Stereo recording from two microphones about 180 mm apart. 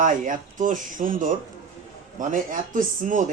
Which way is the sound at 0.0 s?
45° right (ahead or behind).